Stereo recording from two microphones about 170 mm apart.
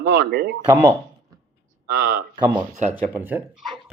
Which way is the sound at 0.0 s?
75° right (ahead or behind).